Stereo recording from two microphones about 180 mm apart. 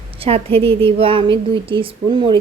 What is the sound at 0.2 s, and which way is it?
A woman's voice, 30° right (ahead or behind).